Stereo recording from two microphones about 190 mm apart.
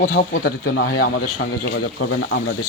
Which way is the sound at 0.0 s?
55° left (ahead or behind).